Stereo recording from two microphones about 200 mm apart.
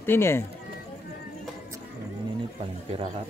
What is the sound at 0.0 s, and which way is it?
Speech, 10° left (ahead or behind).